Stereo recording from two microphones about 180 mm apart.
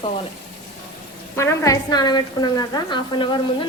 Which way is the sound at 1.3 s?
15° left (ahead or behind).